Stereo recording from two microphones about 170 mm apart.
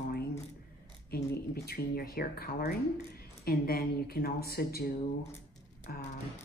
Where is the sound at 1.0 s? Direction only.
65° left (ahead or behind).